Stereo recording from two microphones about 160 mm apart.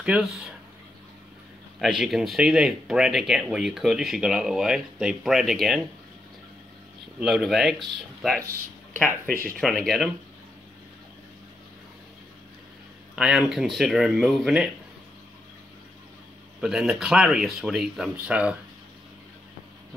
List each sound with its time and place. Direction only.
0.0 s speech: 5° right (ahead or behind)
1.8 s speech: centre (ahead or behind)
7.2 s speech: 5° right (ahead or behind)
13.1 s speech: 5° right (ahead or behind)
16.6 s speech: 5° right (ahead or behind)